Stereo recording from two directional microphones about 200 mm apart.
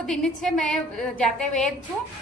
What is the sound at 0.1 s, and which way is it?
A woman's voice, centre (ahead or behind).